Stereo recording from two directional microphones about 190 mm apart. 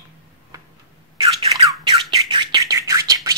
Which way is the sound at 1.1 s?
25° right (ahead or behind).